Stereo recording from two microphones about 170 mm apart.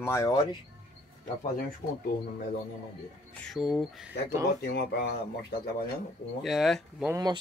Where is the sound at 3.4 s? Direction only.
Centre (ahead or behind).